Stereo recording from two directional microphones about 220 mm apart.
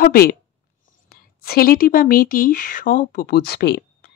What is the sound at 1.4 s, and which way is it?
Speech, 40° left (ahead or behind).